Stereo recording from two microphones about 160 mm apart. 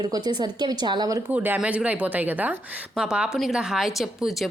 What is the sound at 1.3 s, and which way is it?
Speech, 10° right (ahead or behind).